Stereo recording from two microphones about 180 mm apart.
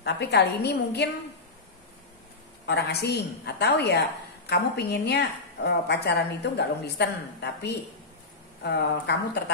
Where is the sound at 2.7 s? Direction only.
65° left (ahead or behind).